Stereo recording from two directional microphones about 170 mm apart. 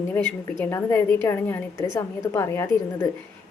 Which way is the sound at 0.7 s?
15° left (ahead or behind).